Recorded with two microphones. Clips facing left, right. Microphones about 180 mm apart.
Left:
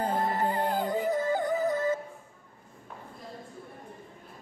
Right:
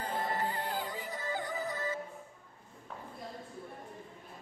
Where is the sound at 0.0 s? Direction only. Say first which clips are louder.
Left 7 dB; 50° left (ahead or behind).